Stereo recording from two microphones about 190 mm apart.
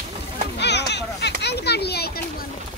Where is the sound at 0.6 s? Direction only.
65° left (ahead or behind).